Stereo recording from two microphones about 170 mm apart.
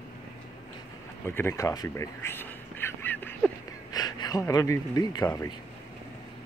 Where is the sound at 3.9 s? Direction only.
25° left (ahead or behind).